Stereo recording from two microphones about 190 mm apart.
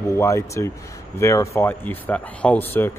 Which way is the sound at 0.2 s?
15° left (ahead or behind).